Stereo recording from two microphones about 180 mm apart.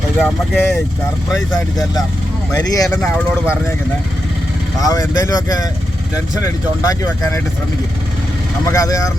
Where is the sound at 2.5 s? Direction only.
20° left (ahead or behind).